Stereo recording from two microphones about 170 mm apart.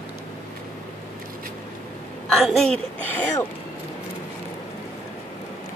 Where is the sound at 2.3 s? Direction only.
Centre (ahead or behind).